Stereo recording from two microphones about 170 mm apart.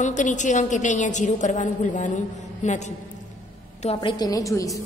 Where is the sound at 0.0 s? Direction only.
45° left (ahead or behind).